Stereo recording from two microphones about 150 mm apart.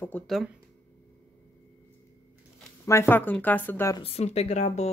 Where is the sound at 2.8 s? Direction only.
15° left (ahead or behind).